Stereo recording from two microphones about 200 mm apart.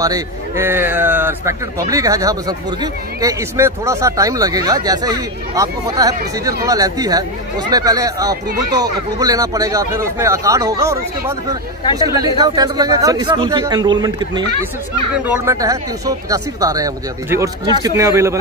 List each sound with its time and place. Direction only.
0.0 s a man's voice: 15° right (ahead or behind)